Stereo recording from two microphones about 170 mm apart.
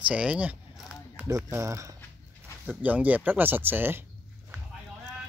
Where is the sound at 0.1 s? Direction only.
5° right (ahead or behind).